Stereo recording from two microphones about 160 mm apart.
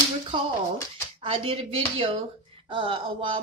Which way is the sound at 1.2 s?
35° right (ahead or behind).